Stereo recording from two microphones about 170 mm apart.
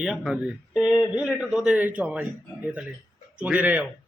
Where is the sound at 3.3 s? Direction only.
10° right (ahead or behind).